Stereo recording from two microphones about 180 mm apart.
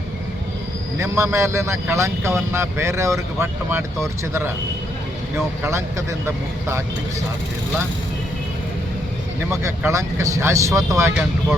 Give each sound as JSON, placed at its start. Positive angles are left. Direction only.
{"t": 0.9, "sound": "speech", "side_deg": -15}
{"t": 5.6, "sound": "speech", "side_deg": -15}
{"t": 9.5, "sound": "speech", "side_deg": -15}